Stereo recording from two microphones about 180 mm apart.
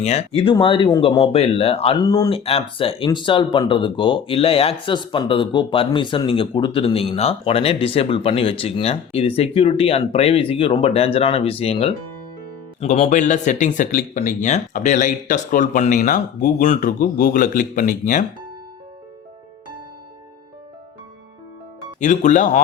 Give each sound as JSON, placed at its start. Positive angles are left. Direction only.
{"t": 0.0, "sound": "speech", "side_deg": 35}
{"t": 1.2, "sound": "speech", "side_deg": 35}
{"t": 2.0, "sound": "speech", "side_deg": 20}
{"t": 2.4, "sound": "speech", "side_deg": 30}
{"t": 22.0, "sound": "speech", "side_deg": 45}